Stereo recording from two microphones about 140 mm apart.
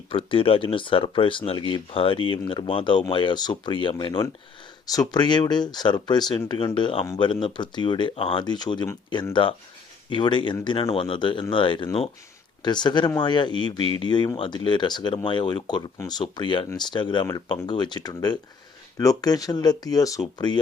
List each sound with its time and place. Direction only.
0.1 s speech: 40° left (ahead or behind)
13.8 s speech: 45° right (ahead or behind)
14.1 s speech: 30° left (ahead or behind)